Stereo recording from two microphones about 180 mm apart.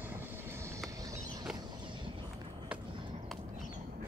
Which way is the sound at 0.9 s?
20° right (ahead or behind).